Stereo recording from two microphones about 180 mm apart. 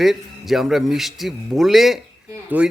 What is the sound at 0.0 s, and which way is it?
A man's voice, centre (ahead or behind).